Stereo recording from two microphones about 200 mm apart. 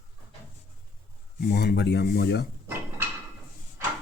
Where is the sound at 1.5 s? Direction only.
50° left (ahead or behind).